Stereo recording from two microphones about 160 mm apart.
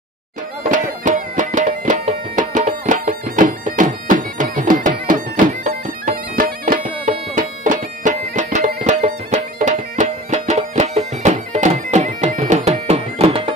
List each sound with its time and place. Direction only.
0.7 s music: 55° right (ahead or behind)